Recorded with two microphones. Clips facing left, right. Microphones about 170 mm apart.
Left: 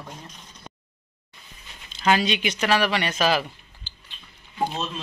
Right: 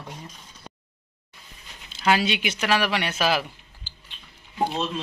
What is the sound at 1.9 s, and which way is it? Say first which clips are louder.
Speech: left 1 dB; 10° right (ahead or behind).